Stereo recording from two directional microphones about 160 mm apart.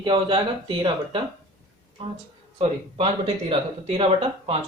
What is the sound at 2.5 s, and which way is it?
Speech, 40° right (ahead or behind).